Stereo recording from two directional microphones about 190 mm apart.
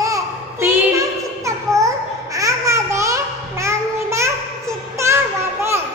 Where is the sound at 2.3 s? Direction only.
15° right (ahead or behind).